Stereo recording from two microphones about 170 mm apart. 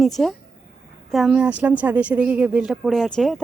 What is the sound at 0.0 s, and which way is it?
A woman's voice, centre (ahead or behind).